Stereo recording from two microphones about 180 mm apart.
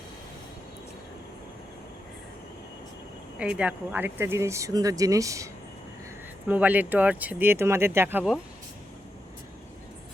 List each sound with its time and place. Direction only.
3.3 s speech: 5° right (ahead or behind)
6.5 s speech: 10° right (ahead or behind)